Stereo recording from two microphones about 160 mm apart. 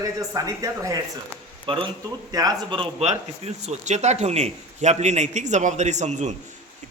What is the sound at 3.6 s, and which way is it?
A man's voice, 45° right (ahead or behind).